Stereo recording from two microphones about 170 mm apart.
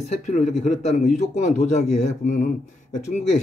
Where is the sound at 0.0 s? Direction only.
40° left (ahead or behind).